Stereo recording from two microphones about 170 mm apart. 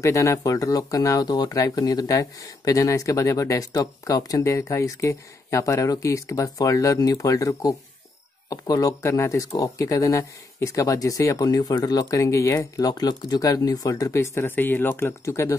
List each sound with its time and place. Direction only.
0.0 s speech: 15° left (ahead or behind)